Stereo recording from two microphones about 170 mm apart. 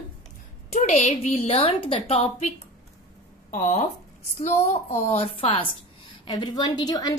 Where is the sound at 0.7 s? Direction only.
45° left (ahead or behind).